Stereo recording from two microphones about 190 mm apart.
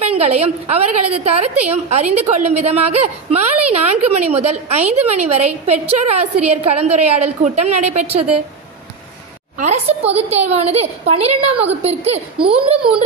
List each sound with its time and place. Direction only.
0.0 s a woman's voice: 35° right (ahead or behind)
9.6 s a woman's voice: 35° right (ahead or behind)